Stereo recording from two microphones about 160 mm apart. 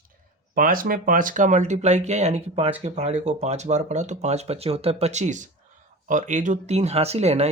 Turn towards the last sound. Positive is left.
turn(degrees=-40)  # may be behind; listen again after turning